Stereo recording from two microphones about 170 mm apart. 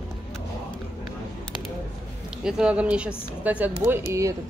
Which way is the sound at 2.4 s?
5° right (ahead or behind).